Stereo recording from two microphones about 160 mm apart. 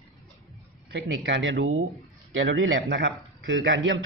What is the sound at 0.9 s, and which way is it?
Speech, 90° right.